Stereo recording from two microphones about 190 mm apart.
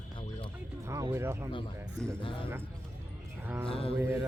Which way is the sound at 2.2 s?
25° left (ahead or behind).